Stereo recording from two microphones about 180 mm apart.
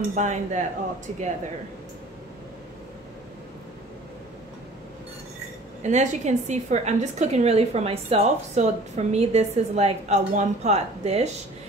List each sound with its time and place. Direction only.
0.1 s a woman's voice: 40° right (ahead or behind)
5.8 s a woman's voice: 40° right (ahead or behind)